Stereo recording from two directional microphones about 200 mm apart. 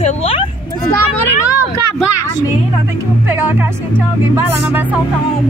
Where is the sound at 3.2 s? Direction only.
10° right (ahead or behind).